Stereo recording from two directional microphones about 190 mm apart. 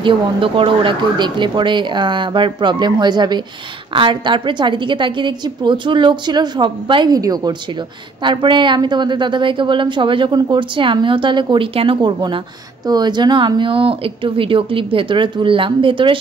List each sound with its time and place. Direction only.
0.0 s a woman's voice: 25° right (ahead or behind)